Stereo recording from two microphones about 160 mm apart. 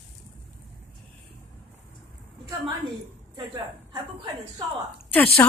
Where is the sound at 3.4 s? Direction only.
25° right (ahead or behind).